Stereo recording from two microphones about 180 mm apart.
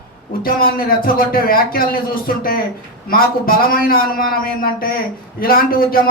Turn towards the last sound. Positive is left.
turn(degrees=55)  # may be behind; listen again after turning